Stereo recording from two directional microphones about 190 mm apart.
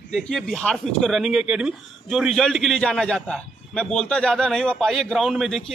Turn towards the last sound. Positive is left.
turn(degrees=0)  # may be behind; listen again after turning